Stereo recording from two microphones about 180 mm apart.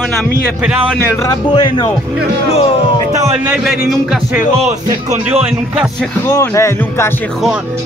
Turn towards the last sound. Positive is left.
turn(degrees=15)  # may be behind; listen again after turning